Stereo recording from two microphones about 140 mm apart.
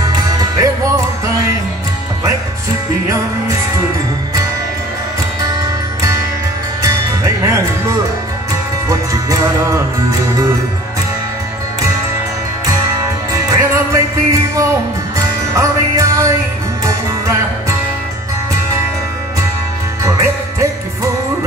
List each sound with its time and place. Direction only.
0.0 s music: 25° right (ahead or behind)
6.8 s music: 20° right (ahead or behind)
13.3 s music: 20° right (ahead or behind)
20.0 s music: 20° right (ahead or behind)